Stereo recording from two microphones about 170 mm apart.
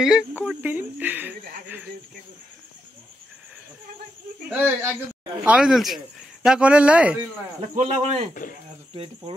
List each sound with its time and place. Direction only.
0.0 s speech: 5° right (ahead or behind)
4.5 s speech: 10° right (ahead or behind)
7.7 s speech: 45° right (ahead or behind)